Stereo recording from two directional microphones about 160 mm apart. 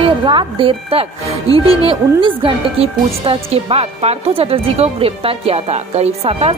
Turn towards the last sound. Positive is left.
turn(degrees=-40)  # may be behind; listen again after turning